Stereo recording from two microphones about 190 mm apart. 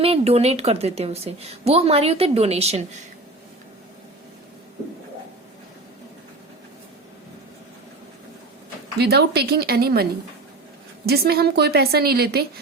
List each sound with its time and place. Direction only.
0.0 s a woman's voice: 30° right (ahead or behind)
9.0 s a woman's voice: 60° right (ahead or behind)